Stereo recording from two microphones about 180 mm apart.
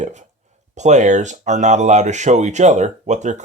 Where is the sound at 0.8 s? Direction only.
40° right (ahead or behind).